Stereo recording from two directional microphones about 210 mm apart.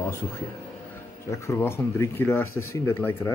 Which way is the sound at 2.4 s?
85° left.